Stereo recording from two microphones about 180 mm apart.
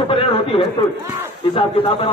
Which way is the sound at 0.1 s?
30° left (ahead or behind).